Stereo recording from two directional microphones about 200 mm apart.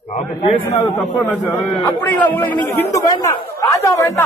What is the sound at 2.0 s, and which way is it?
A man's voice, 10° left (ahead or behind).